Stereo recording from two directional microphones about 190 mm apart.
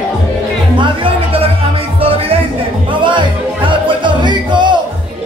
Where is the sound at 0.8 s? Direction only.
25° right (ahead or behind).